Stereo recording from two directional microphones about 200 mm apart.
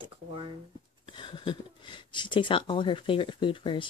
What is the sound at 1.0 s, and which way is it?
Speech, 25° left (ahead or behind).